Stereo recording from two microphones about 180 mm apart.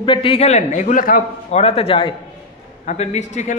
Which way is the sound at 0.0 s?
30° left (ahead or behind).